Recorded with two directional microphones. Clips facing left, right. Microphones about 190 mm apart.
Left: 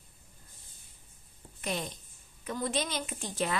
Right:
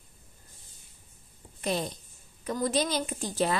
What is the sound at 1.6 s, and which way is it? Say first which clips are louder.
A woman's voice: right 5 dB; 35° right (ahead or behind).